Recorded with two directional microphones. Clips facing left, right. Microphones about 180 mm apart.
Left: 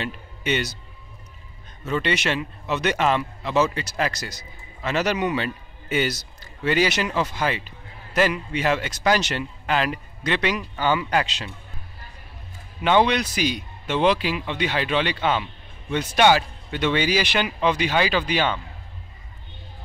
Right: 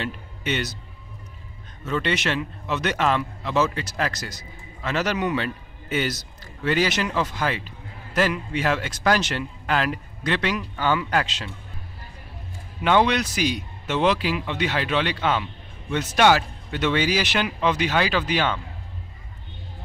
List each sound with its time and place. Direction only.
0.0 s a sound: centre (ahead or behind)
1.9 s a man's voice: 5° left (ahead or behind)
4.2 s a man's voice: 70° left (ahead or behind)
4.8 s a man's voice: centre (ahead or behind)
12.8 s a man's voice: 5° right (ahead or behind)